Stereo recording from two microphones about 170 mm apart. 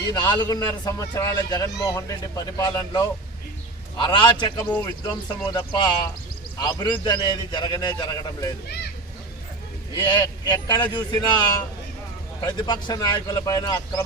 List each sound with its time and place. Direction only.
0.1 s a man's voice: 25° left (ahead or behind)
4.6 s speech: 10° left (ahead or behind)
5.5 s a man's voice: 25° left (ahead or behind)
10.0 s a man's voice: 25° left (ahead or behind)